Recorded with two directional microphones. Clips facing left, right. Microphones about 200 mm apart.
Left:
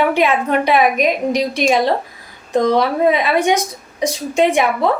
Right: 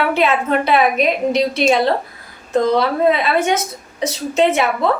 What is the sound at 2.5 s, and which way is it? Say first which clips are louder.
A woman's voice: left 1 dB; 15° left (ahead or behind).